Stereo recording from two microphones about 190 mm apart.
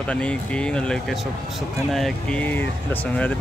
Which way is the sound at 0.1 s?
5° left (ahead or behind).